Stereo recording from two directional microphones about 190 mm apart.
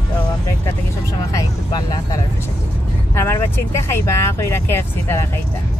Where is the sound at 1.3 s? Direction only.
20° left (ahead or behind).